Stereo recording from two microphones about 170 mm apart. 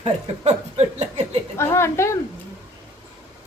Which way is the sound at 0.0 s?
40° right (ahead or behind).